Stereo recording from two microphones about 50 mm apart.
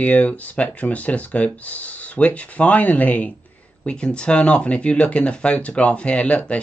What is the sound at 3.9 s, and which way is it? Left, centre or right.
Speech, centre.